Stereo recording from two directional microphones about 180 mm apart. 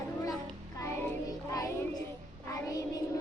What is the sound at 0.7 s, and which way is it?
Music, 15° left (ahead or behind).